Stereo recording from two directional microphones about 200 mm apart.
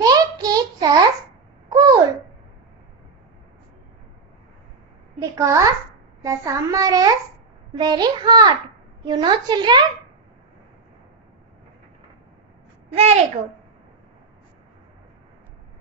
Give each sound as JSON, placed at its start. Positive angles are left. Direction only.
{"t": 0.0, "sound": "a sound", "side_deg": -20}
{"t": 1.7, "sound": "babbling", "side_deg": -20}
{"t": 5.2, "sound": "a child's voice", "side_deg": -15}
{"t": 12.9, "sound": "a child's voice", "side_deg": -30}